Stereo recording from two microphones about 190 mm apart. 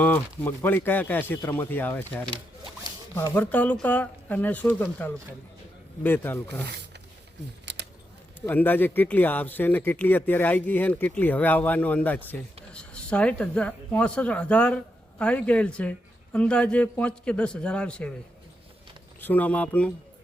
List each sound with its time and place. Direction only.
0.0 s speech: 10° left (ahead or behind)
7.6 s a sound: 65° right (ahead or behind)
8.4 s speech: 10° left (ahead or behind)
19.2 s speech: 10° left (ahead or behind)